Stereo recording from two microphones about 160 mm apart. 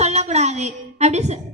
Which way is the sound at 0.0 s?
45° right (ahead or behind).